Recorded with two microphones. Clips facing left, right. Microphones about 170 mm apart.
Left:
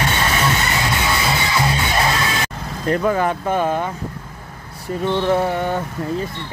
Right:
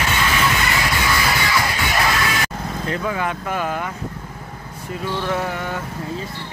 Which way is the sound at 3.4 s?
30° left (ahead or behind).